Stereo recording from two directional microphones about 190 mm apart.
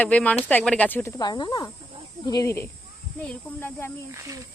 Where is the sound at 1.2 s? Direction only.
20° left (ahead or behind).